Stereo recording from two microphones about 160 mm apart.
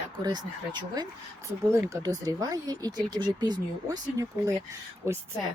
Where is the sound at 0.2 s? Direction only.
25° right (ahead or behind).